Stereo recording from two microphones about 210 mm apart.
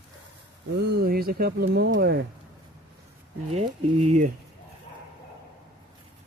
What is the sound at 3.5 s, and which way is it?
Speech, 30° right (ahead or behind).